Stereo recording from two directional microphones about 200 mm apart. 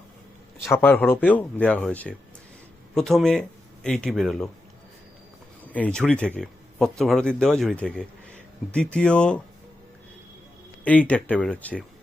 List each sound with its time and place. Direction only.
0.7 s speech: 10° left (ahead or behind)
5.7 s speech: 5° left (ahead or behind)
10.8 s speech: 5° left (ahead or behind)